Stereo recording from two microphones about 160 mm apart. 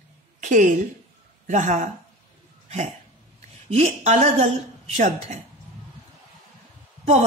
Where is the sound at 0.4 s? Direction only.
55° right (ahead or behind).